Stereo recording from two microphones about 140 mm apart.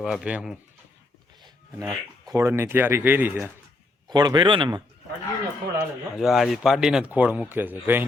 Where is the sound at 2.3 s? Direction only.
20° right (ahead or behind).